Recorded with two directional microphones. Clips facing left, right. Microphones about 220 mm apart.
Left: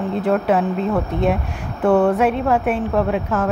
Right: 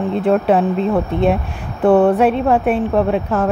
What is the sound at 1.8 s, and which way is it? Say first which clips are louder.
A woman's voice: right 3 dB; 30° right (ahead or behind).